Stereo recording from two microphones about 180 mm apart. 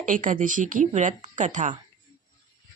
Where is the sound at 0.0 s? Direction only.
50° right (ahead or behind).